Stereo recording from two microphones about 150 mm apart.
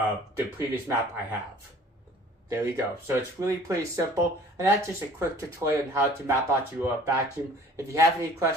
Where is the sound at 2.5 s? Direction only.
20° right (ahead or behind).